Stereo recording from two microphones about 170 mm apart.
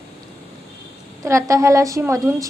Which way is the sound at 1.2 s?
15° right (ahead or behind).